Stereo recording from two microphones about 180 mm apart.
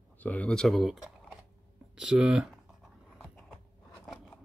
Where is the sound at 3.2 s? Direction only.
5° left (ahead or behind).